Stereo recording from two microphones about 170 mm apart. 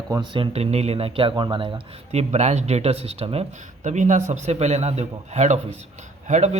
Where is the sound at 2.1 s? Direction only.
40° right (ahead or behind).